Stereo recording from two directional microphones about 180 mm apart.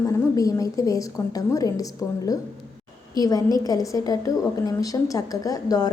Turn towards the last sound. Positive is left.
turn(degrees=20)  # may be behind; listen again after turning